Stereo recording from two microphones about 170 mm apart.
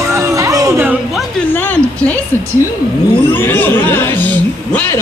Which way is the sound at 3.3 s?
10° left (ahead or behind).